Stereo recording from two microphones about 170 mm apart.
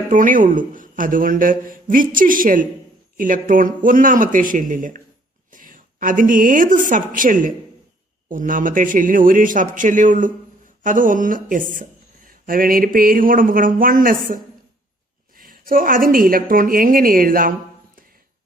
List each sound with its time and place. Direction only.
0.1 s a man's voice: 50° right (ahead or behind)